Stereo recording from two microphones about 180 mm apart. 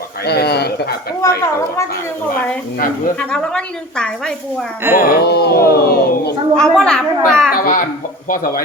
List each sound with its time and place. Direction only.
0.3 s speech: 65° left (ahead or behind)
1.2 s a child's voice: 15° left (ahead or behind)
3.2 s a woman's voice: 5° left (ahead or behind)
4.8 s speech: 10° right (ahead or behind)
5.0 s speech: 65° left (ahead or behind)
6.6 s a woman's voice: 5° left (ahead or behind)
7.5 s a child's voice: 50° left (ahead or behind)